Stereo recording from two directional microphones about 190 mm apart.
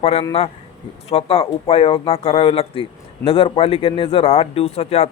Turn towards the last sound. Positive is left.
turn(degrees=35)  # may be behind; listen again after turning